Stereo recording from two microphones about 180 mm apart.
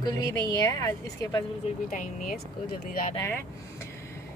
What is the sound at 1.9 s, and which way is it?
Speech, 50° left (ahead or behind).